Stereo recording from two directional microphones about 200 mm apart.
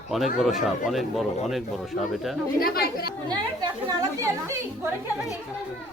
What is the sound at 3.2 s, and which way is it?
Speech, 20° right (ahead or behind).